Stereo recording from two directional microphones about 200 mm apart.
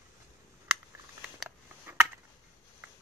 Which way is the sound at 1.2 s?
5° right (ahead or behind).